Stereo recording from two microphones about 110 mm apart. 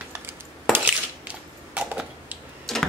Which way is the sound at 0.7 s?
10° right (ahead or behind).